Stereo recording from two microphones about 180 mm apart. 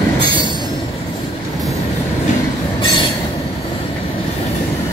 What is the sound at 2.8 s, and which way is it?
Train, 25° left (ahead or behind).